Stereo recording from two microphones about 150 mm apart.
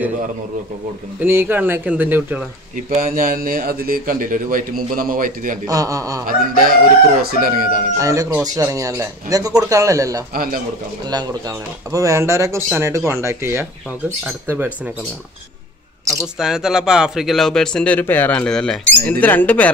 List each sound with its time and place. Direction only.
1.2 s speech: 15° right (ahead or behind)
2.9 s a man's voice: 60° right (ahead or behind)
5.7 s speech: 25° right (ahead or behind)
6.2 s a man's voice: 75° right (ahead or behind)
8.0 s speech: 20° right (ahead or behind)
10.3 s a man's voice: 75° right (ahead or behind)
11.1 s speech: 25° right (ahead or behind)
16.3 s speech: 5° right (ahead or behind)